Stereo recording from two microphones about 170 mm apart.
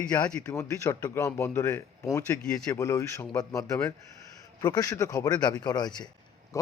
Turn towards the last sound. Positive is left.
turn(degrees=20)  # may be behind; listen again after turning